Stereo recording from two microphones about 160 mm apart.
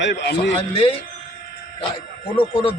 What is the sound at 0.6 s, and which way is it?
Speech, 35° left (ahead or behind).